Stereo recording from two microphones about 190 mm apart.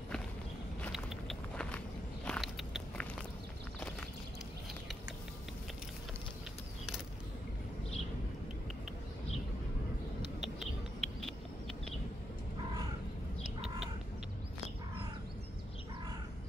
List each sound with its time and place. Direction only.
0.9 s vehicle: 5° left (ahead or behind)
2.2 s biting: centre (ahead or behind)
10.4 s a sound: centre (ahead or behind)
13.4 s bird: 30° right (ahead or behind)